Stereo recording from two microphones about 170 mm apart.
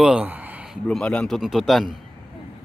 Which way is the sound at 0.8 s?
5° left (ahead or behind).